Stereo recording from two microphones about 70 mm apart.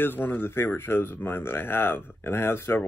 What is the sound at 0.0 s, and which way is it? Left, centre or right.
Speech, left.